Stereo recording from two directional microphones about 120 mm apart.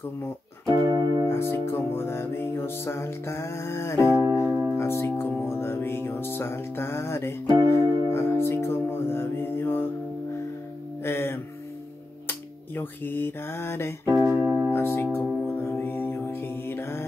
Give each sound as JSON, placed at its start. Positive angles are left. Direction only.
{"t": 0.7, "sound": "keyboard", "side_deg": -35}
{"t": 1.2, "sound": "music", "side_deg": 20}
{"t": 11.0, "sound": "music", "side_deg": 20}
{"t": 14.0, "sound": "speech", "side_deg": -20}
{"t": 14.7, "sound": "music", "side_deg": 20}